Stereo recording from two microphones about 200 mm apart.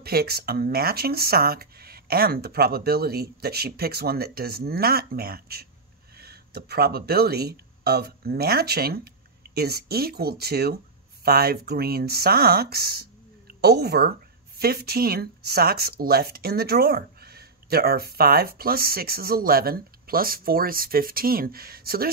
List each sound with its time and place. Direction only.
0.0 s speech: 50° right (ahead or behind)